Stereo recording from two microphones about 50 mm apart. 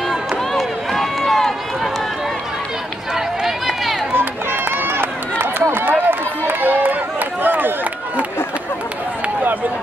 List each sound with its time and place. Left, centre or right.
0.5 s run: centre
3.2 s run: centre
4.1 s run: right